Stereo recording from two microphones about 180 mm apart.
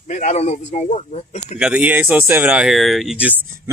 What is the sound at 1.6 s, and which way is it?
Speech, 5° right (ahead or behind).